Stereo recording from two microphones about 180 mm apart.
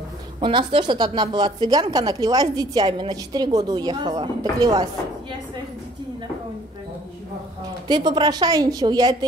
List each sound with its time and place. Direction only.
0.4 s a woman's voice: 25° right (ahead or behind)
7.6 s a woman's voice: 25° right (ahead or behind)